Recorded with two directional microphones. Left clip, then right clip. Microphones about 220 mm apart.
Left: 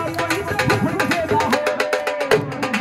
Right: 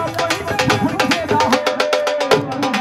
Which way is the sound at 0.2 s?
30° right (ahead or behind).